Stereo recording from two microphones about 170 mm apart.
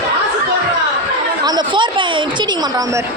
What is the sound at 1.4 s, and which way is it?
Speech, 25° right (ahead or behind).